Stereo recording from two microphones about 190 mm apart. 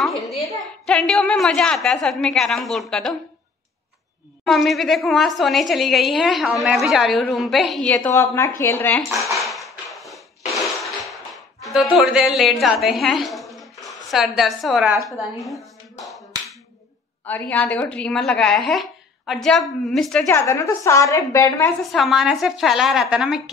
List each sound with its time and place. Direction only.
0.8 s a woman's voice: centre (ahead or behind)
4.5 s a woman's voice: centre (ahead or behind)
9.3 s a sound: centre (ahead or behind)
10.5 s music: centre (ahead or behind)
15.0 s finger snapping: centre (ahead or behind)
17.2 s a woman's voice: 10° left (ahead or behind)
20.2 s a woman's voice: 15° left (ahead or behind)
21.9 s a woman's voice: centre (ahead or behind)